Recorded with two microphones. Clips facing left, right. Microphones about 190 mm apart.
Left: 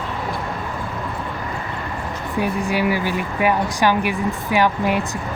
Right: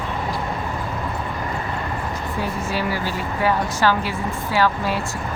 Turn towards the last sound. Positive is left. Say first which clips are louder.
# left 2 dB
turn(degrees=20)  # may be behind; listen again after turning